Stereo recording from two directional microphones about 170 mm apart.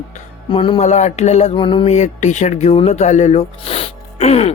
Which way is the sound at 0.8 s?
45° left (ahead or behind).